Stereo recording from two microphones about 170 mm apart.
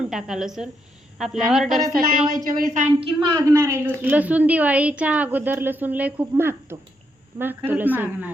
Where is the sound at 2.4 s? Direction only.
55° right (ahead or behind).